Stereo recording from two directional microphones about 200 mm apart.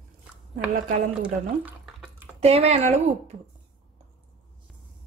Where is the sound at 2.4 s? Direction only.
30° right (ahead or behind).